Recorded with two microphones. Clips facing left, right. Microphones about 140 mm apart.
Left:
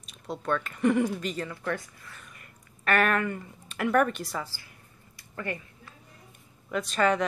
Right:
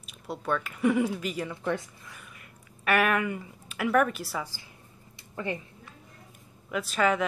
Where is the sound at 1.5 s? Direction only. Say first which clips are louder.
Right 2 dB; 20° right (ahead or behind).